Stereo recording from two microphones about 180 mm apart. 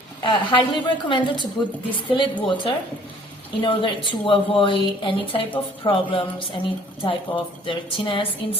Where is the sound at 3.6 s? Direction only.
25° left (ahead or behind).